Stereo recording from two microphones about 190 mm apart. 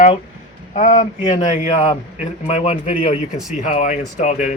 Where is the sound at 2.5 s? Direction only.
35° left (ahead or behind).